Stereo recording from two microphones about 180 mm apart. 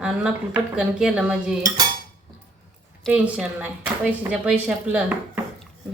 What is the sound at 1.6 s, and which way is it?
Cutlery, 20° right (ahead or behind).